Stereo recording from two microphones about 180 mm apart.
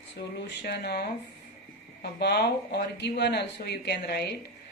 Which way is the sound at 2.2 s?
65° left (ahead or behind).